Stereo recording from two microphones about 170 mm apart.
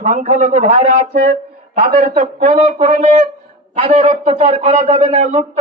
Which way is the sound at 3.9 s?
40° right (ahead or behind).